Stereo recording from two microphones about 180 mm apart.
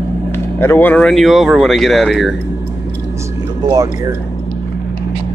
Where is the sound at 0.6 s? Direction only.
10° left (ahead or behind).